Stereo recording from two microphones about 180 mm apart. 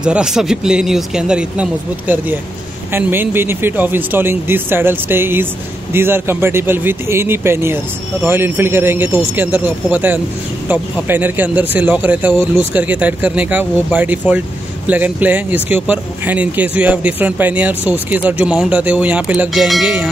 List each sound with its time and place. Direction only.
0.0 s speech: 5° right (ahead or behind)